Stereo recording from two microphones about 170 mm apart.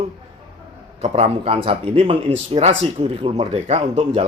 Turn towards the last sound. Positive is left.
turn(degrees=-35)  # may be behind; listen again after turning